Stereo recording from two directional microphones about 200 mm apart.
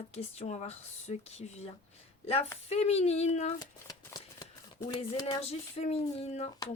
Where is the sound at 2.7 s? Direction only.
30° left (ahead or behind).